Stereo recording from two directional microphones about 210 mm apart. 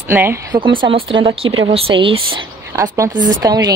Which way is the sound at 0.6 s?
25° right (ahead or behind).